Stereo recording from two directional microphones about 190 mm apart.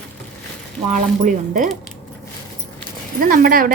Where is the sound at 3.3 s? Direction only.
50° right (ahead or behind).